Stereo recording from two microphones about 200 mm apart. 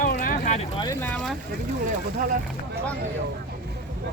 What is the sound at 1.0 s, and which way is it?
Speech, centre (ahead or behind).